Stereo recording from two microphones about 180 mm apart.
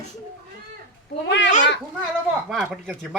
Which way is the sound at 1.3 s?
75° left (ahead or behind).